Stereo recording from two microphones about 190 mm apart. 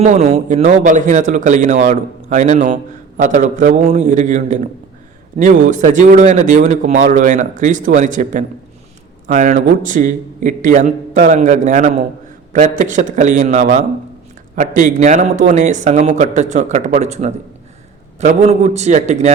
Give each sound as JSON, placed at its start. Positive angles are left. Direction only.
{"t": 0.0, "sound": "speech", "side_deg": -35}